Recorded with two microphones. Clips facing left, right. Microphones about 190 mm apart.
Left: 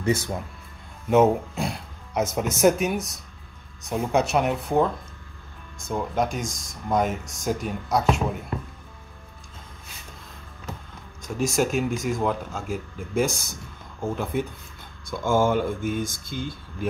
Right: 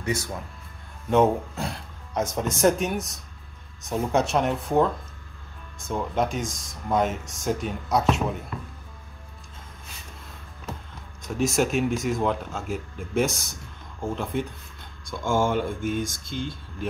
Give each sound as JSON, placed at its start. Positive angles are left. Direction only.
{"t": 1.1, "sound": "speech", "side_deg": 10}
{"t": 5.9, "sound": "speech", "side_deg": 0}
{"t": 11.2, "sound": "speech", "side_deg": 0}